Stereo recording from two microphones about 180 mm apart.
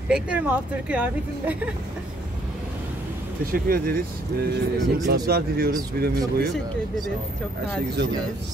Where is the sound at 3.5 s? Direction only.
55° right (ahead or behind).